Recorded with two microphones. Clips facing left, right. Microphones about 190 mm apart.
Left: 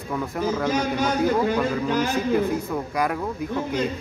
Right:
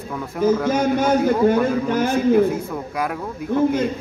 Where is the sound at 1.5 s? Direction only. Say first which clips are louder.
Right 5 dB; 50° right (ahead or behind).